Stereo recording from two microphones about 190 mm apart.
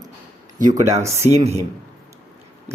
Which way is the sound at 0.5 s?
40° right (ahead or behind).